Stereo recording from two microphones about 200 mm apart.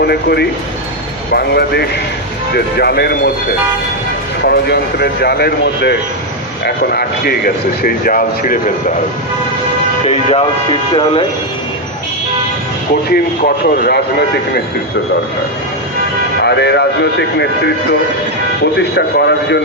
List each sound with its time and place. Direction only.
0.0 s speech: 55° left (ahead or behind)
4.4 s speech: 55° left (ahead or behind)
10.1 s speech: 30° left (ahead or behind)
13.1 s speech: 50° left (ahead or behind)
16.4 s speech: 55° left (ahead or behind)
18.6 s speech: 55° left (ahead or behind)